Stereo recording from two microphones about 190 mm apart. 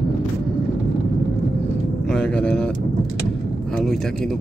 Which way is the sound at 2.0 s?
5° left (ahead or behind).